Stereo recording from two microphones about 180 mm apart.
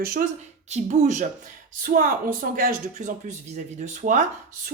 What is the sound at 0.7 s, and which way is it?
A woman's voice, 40° right (ahead or behind).